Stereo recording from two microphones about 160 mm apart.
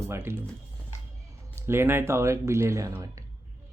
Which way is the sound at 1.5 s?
15° right (ahead or behind).